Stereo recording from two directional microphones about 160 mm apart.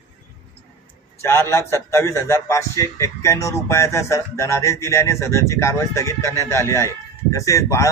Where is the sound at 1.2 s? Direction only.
15° left (ahead or behind).